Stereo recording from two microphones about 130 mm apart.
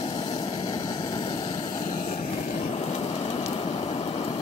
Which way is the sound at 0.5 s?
30° left (ahead or behind).